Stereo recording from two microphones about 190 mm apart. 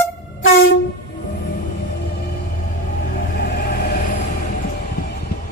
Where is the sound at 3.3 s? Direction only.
60° left (ahead or behind).